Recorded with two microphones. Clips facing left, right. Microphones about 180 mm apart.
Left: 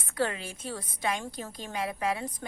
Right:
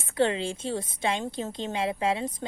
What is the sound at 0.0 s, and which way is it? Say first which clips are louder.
A woman's voice: right 6 dB; 25° right (ahead or behind).